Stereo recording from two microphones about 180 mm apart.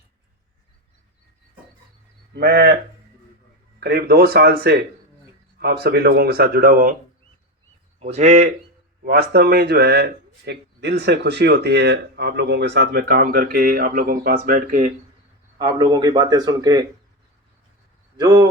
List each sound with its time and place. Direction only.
2.3 s a man's voice: 65° right (ahead or behind)
3.8 s a man's voice: 60° right (ahead or behind)
7.9 s speech: 35° right (ahead or behind)
9.0 s a man's voice: 60° right (ahead or behind)
15.5 s a man's voice: 25° right (ahead or behind)
18.2 s a man's voice: 20° right (ahead or behind)